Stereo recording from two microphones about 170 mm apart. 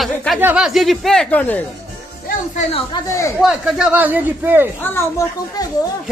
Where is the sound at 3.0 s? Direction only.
15° left (ahead or behind).